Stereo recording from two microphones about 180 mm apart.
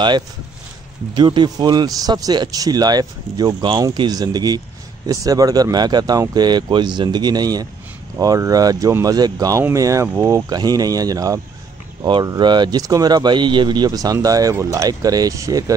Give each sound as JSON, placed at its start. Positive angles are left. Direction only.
{"t": 1.1, "sound": "speech", "side_deg": -25}